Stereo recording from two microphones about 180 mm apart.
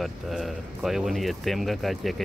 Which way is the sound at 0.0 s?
Centre (ahead or behind).